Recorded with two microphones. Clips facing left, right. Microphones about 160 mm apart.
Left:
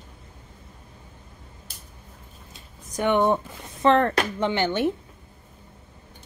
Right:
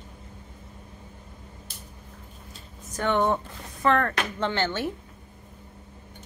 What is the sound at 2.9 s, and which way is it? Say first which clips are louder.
Speech: left 3 dB; 15° left (ahead or behind).